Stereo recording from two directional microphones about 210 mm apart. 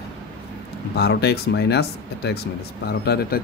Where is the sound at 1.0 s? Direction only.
50° left (ahead or behind).